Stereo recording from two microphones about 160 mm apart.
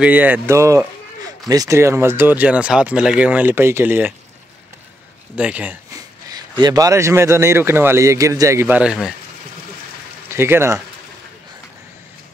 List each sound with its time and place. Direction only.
0.0 s speech: 10° right (ahead or behind)
5.3 s speech: 10° right (ahead or behind)
6.6 s speech: 25° right (ahead or behind)
10.3 s speech: 15° right (ahead or behind)